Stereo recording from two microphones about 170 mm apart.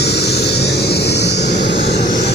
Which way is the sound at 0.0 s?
75° left (ahead or behind).